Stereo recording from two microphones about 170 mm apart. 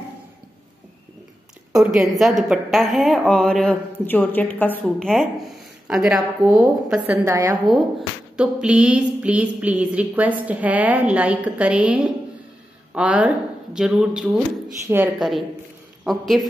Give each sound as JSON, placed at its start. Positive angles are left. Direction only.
{"t": 1.8, "sound": "a woman's voice", "side_deg": 0}
{"t": 4.8, "sound": "a woman's voice", "side_deg": 0}
{"t": 7.2, "sound": "a woman's voice", "side_deg": -20}
{"t": 8.4, "sound": "a woman's voice", "side_deg": -5}
{"t": 15.1, "sound": "a woman's voice", "side_deg": 0}